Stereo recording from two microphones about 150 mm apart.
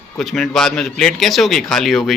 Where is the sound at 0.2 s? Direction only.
Centre (ahead or behind).